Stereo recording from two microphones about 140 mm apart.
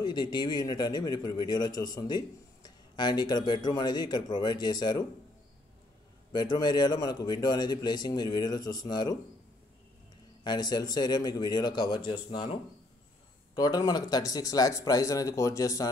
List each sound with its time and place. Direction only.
0.0 s speech: 30° left (ahead or behind)
6.3 s a man's voice: 30° left (ahead or behind)
10.4 s speech: 30° left (ahead or behind)
13.6 s a man's voice: 30° left (ahead or behind)